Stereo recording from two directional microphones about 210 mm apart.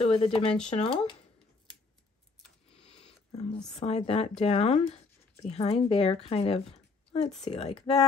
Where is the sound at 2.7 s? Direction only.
30° left (ahead or behind).